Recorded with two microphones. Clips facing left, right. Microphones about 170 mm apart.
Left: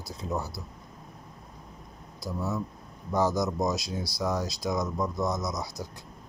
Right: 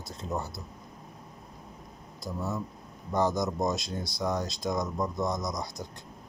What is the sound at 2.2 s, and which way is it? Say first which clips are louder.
Speech: left 2 dB; 15° right (ahead or behind).